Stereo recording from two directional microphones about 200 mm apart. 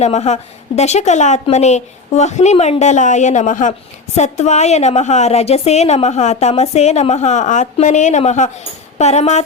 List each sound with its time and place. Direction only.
0.0 s a woman's voice: 35° left (ahead or behind)